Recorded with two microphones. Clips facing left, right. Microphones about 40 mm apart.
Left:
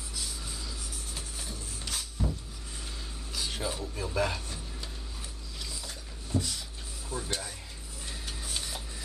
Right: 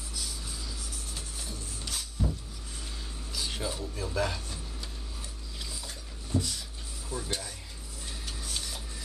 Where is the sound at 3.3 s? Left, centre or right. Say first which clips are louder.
Even; centre.